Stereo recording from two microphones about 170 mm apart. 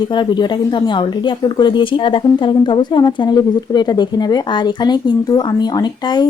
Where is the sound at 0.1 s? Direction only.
25° left (ahead or behind).